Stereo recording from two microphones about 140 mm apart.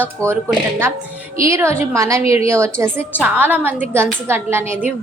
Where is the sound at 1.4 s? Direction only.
20° right (ahead or behind).